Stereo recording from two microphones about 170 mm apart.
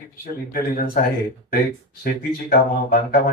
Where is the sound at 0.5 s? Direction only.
60° left (ahead or behind).